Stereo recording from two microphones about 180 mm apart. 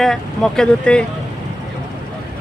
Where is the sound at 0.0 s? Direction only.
Centre (ahead or behind).